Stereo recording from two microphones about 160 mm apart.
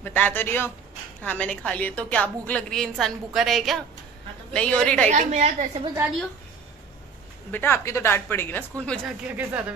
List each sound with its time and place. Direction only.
0.0 s a woman's voice: 10° left (ahead or behind)
5.1 s a woman's voice: 45° right (ahead or behind)
7.5 s a woman's voice: 15° left (ahead or behind)
9.3 s speech: 10° right (ahead or behind)